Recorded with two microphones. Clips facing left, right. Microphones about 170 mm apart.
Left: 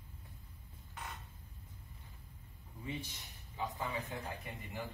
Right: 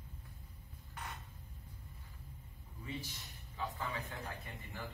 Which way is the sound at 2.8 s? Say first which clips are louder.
Left 2 dB; 20° left (ahead or behind).